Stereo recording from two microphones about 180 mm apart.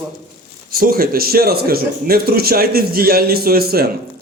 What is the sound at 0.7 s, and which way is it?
A man's voice, 55° right (ahead or behind).